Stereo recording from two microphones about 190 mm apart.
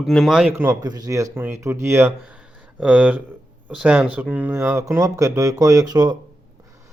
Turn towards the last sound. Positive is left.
turn(degrees=-20)  # may be behind; listen again after turning